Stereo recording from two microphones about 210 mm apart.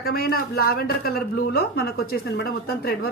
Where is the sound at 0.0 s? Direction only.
45° left (ahead or behind).